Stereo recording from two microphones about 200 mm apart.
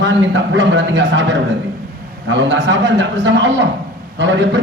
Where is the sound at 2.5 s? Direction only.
65° right (ahead or behind).